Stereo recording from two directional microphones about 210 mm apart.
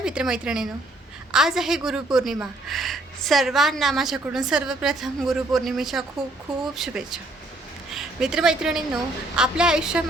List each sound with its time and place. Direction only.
0.0 s a woman's voice: 5° right (ahead or behind)